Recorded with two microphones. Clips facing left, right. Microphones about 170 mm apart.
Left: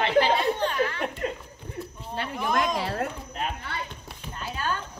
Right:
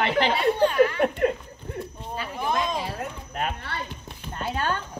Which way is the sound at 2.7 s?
90° left.